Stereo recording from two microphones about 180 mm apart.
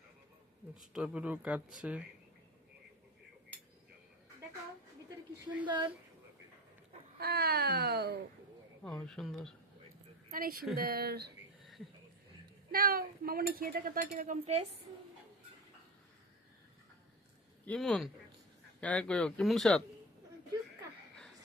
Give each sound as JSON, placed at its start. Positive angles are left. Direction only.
{"t": 0.8, "sound": "speech", "side_deg": -5}
{"t": 5.5, "sound": "speech", "side_deg": -10}
{"t": 7.2, "sound": "speech", "side_deg": -60}
{"t": 8.8, "sound": "speech", "side_deg": 5}
{"t": 10.3, "sound": "a woman's voice", "side_deg": -50}
{"t": 12.7, "sound": "speech", "side_deg": -55}
{"t": 14.4, "sound": "a woman's voice", "side_deg": -35}
{"t": 17.7, "sound": "speech", "side_deg": 5}